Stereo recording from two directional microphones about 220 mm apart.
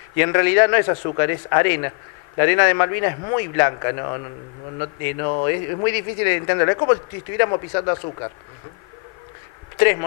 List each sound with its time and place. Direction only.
0.2 s a man's voice: 20° left (ahead or behind)